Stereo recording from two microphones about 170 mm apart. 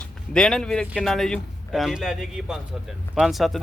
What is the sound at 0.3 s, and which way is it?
Speech, 5° left (ahead or behind).